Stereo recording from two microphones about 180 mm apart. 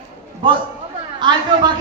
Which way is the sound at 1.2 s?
25° right (ahead or behind).